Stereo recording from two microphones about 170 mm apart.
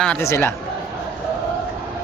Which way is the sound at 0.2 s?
15° left (ahead or behind).